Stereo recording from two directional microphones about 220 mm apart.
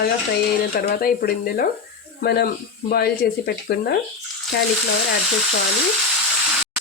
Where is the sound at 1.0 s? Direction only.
45° left (ahead or behind).